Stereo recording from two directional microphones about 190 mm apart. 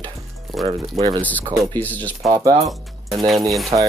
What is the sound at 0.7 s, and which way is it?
Speech, 30° right (ahead or behind).